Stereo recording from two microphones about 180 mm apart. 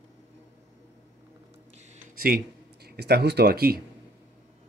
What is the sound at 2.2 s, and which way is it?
Speech, 60° right (ahead or behind).